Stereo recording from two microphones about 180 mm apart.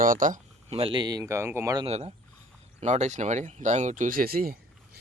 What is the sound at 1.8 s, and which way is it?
Speech, 35° right (ahead or behind).